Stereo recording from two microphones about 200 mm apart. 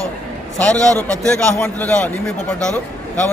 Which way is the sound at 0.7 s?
15° right (ahead or behind).